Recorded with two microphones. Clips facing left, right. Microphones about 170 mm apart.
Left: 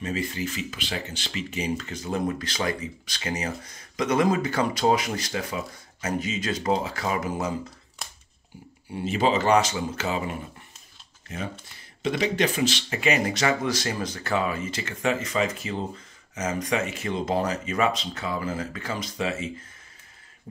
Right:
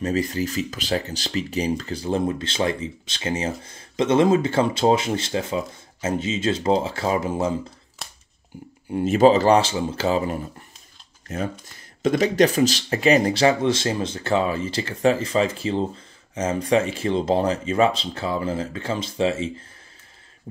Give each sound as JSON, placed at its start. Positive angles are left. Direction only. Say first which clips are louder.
{"t": 0.0, "sound": "speech", "louder": "right 6 dB", "side_deg": -40}
{"t": 8.9, "sound": "speech", "louder": "right 8 dB", "side_deg": -45}
{"t": 12.0, "sound": "speech", "louder": "right 6 dB", "side_deg": -45}